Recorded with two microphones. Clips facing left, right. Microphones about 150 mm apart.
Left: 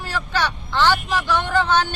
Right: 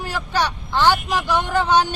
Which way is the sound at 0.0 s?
10° right (ahead or behind).